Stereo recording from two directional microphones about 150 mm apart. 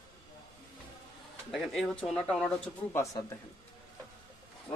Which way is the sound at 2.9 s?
20° left (ahead or behind).